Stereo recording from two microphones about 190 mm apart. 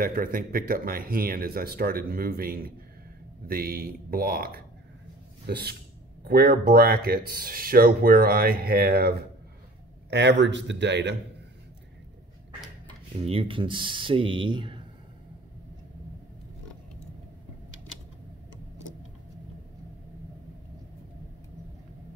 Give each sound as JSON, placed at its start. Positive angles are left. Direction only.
{"t": 0.0, "sound": "speech", "side_deg": -50}
{"t": 10.0, "sound": "a man's voice", "side_deg": -70}
{"t": 13.3, "sound": "speech", "side_deg": -30}